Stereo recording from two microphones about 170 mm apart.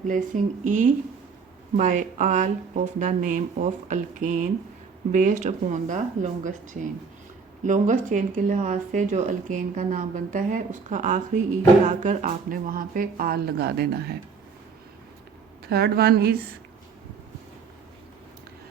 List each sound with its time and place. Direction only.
0.1 s speech: 50° right (ahead or behind); by 14.2 s 65° right (ahead or behind)
15.6 s a woman's voice: 65° right (ahead or behind)